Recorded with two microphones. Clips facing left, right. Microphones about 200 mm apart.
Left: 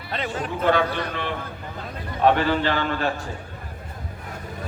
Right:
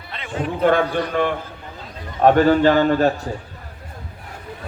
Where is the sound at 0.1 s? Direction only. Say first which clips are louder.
Even; 40° left (ahead or behind).